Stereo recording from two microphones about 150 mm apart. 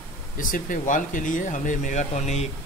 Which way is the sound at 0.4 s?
65° left (ahead or behind).